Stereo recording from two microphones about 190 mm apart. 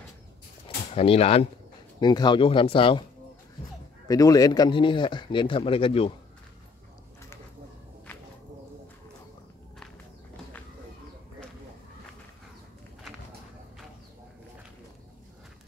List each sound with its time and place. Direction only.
0.9 s speech: 30° left (ahead or behind)
4.1 s speech: 20° left (ahead or behind)